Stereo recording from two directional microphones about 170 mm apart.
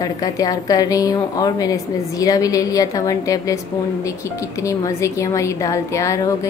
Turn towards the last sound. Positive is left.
turn(degrees=20)  # may be behind; listen again after turning